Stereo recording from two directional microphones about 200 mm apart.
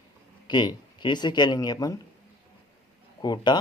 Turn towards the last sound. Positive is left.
turn(degrees=20)  # may be behind; listen again after turning